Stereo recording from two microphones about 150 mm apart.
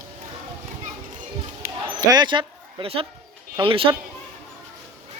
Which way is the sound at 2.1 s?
30° right (ahead or behind).